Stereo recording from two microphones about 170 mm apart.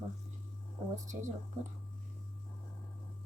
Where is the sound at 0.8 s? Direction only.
40° right (ahead or behind).